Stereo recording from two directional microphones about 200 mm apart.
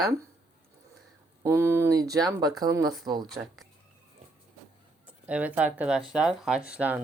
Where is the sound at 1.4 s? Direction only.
15° right (ahead or behind).